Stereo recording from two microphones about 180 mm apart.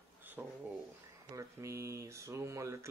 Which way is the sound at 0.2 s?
10° right (ahead or behind).